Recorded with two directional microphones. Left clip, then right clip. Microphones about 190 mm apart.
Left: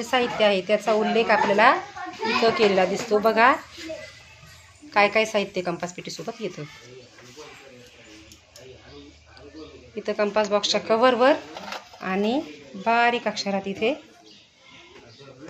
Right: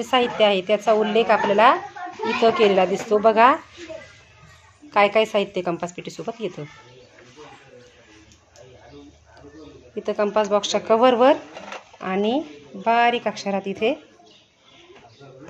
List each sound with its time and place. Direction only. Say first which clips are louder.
0.0 s a woman's voice: right 3 dB; 15° right (ahead or behind)
4.9 s a woman's voice: right 2 dB; 15° right (ahead or behind)
9.9 s speech: right 2 dB; 20° right (ahead or behind)
11.7 s speech: right 2 dB; 10° right (ahead or behind)